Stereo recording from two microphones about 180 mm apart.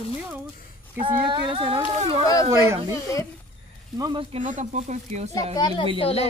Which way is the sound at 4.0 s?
25° right (ahead or behind).